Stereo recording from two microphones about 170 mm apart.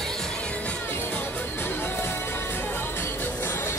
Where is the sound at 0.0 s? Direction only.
5° left (ahead or behind).